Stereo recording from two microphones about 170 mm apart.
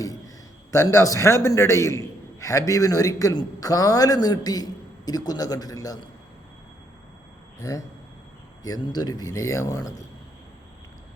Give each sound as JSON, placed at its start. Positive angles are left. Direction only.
{"t": 0.7, "sound": "a man's voice", "side_deg": 15}
{"t": 7.6, "sound": "a man's voice", "side_deg": 20}